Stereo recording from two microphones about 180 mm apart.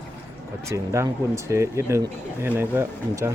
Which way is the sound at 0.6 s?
15° right (ahead or behind).